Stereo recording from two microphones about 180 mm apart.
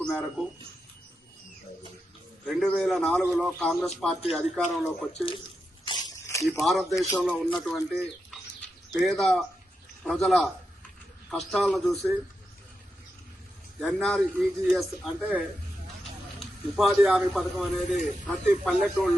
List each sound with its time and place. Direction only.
0.0 s a sound: 5° left (ahead or behind)
2.5 s a man's voice: 5° left (ahead or behind)
5.8 s a sound: 25° left (ahead or behind)
6.6 s a man's voice: centre (ahead or behind)
7.9 s bird: centre (ahead or behind)
9.0 s a man's voice: centre (ahead or behind)
13.7 s a man's voice: 5° left (ahead or behind)